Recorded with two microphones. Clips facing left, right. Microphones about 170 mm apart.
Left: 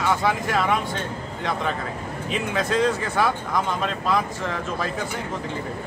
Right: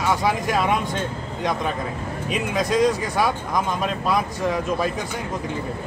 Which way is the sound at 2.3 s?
15° right (ahead or behind).